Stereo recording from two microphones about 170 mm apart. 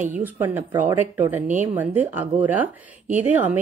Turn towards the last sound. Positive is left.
turn(degrees=-10)  # may be behind; listen again after turning